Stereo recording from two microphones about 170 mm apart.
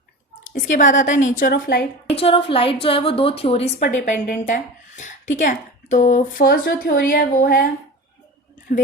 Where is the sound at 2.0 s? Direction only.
35° left (ahead or behind).